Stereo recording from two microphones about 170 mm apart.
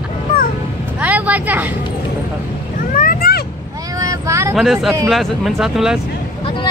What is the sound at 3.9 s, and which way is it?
Vehicle, 20° right (ahead or behind).